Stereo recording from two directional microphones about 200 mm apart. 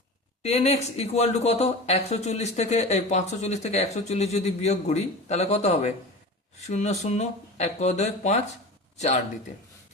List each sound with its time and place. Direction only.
0.4 s speech: 30° left (ahead or behind)